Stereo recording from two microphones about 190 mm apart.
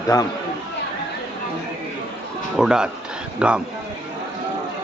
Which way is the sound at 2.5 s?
5° right (ahead or behind).